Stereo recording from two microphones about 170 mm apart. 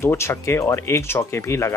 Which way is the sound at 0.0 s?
15° left (ahead or behind).